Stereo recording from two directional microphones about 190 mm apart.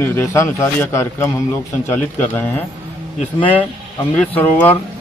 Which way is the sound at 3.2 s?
30° left (ahead or behind).